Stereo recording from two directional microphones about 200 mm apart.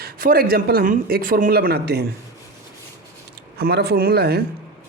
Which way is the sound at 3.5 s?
50° right (ahead or behind).